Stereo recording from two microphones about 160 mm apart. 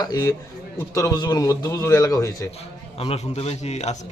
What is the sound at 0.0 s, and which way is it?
A man's voice, 20° left (ahead or behind).